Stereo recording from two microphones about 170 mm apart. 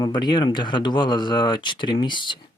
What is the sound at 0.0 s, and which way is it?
Speech, 25° left (ahead or behind).